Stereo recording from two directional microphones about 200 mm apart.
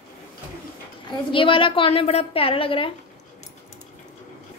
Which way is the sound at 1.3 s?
25° left (ahead or behind).